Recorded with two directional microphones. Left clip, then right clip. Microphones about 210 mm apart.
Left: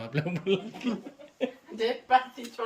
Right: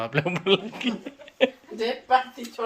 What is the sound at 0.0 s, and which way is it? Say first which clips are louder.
Speech: right 7 dB; centre (ahead or behind).